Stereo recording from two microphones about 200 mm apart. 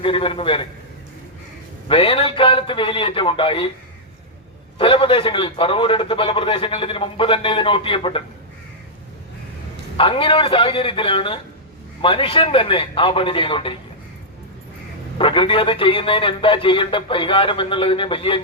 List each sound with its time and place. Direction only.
0.0 s a man's voice: 25° left (ahead or behind)
1.9 s a man's voice: 25° left (ahead or behind)
4.8 s a man's voice: 25° left (ahead or behind)
10.0 s a man's voice: 25° left (ahead or behind)
15.2 s a man's voice: 25° left (ahead or behind)